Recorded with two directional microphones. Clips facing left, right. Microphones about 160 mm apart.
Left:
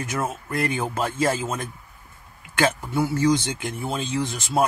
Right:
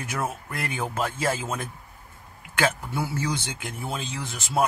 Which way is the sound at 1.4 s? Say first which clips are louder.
Left 3 dB; 5° right (ahead or behind).